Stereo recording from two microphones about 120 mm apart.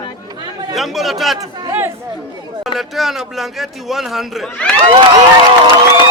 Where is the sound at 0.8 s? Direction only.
Centre (ahead or behind).